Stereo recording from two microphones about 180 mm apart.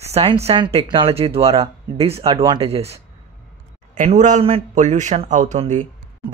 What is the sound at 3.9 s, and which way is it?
Speech, 45° right (ahead or behind).